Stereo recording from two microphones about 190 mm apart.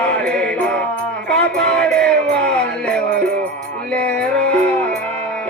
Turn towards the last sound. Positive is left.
turn(degrees=5)  # may be behind; listen again after turning